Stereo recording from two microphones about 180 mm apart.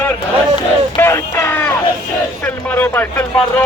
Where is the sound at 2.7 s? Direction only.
10° left (ahead or behind).